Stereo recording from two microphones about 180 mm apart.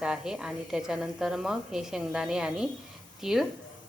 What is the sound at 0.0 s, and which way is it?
A woman's voice, 5° right (ahead or behind).